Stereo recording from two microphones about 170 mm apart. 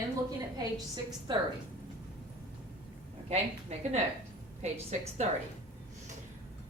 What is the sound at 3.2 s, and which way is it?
Speech, 40° right (ahead or behind).